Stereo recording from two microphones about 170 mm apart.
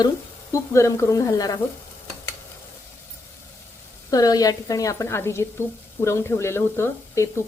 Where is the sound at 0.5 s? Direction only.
15° left (ahead or behind).